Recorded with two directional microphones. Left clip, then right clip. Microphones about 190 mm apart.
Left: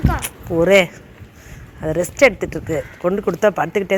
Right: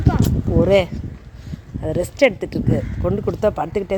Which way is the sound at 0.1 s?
5° left (ahead or behind).